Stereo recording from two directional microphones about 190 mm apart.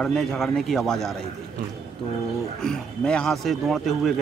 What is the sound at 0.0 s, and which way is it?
Speech, centre (ahead or behind).